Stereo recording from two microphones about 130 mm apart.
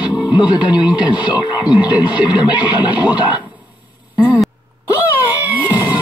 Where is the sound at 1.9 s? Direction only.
10° right (ahead or behind).